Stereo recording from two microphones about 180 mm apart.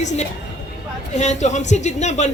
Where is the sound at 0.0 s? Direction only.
40° left (ahead or behind).